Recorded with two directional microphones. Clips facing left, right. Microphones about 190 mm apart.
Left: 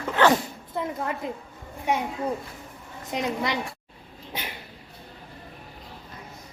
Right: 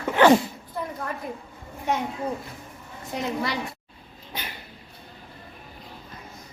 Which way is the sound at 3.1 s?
20° left (ahead or behind).